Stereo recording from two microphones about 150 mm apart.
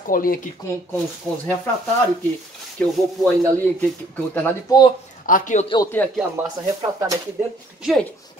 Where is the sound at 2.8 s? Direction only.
10° left (ahead or behind).